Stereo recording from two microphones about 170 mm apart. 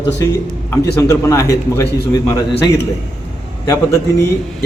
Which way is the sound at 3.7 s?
20° left (ahead or behind).